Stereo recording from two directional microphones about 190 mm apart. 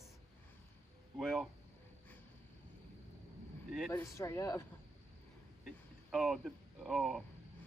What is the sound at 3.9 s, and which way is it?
Speech, 15° left (ahead or behind).